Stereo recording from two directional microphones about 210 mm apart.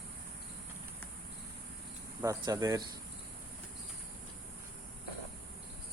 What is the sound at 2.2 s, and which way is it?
Speech, 15° right (ahead or behind).